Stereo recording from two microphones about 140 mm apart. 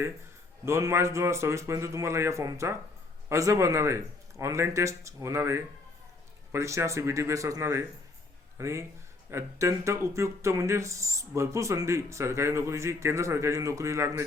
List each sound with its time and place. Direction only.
0.6 s speech: 20° right (ahead or behind)